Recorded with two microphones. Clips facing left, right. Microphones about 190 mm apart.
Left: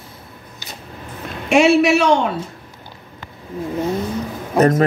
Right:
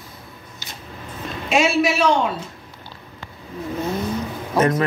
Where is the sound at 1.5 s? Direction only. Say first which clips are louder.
Left 6 dB; 65° left (ahead or behind).